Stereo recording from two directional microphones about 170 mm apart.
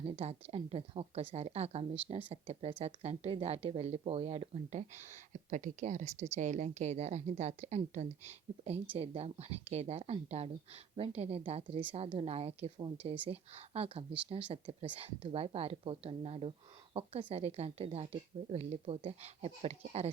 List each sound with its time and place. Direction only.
0.0 s speech: 35° right (ahead or behind)